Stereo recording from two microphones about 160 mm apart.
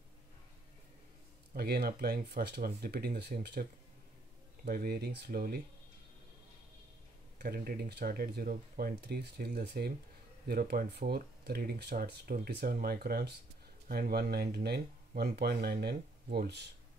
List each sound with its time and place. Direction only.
1.5 s speech: 80° right
3.2 s speech: 90° right
4.6 s speech: 70° right (ahead or behind)
7.3 s speech: 70° right (ahead or behind); by 9.9 s 85° right
10.4 s speech: 70° right (ahead or behind)
13.8 s speech: 70° right (ahead or behind); by 16.7 s 90° right